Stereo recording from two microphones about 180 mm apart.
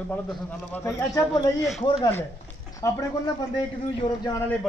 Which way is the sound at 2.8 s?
20° left (ahead or behind).